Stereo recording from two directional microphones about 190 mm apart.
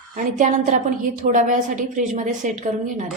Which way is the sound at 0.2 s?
40° right (ahead or behind).